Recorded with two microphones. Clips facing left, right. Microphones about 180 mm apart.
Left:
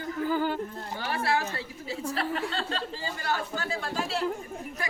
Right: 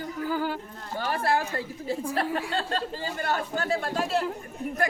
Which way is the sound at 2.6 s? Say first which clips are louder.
Right 3 dB; 45° right (ahead or behind).